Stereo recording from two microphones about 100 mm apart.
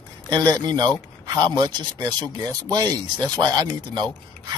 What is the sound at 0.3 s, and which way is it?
Speech, 45° right (ahead or behind).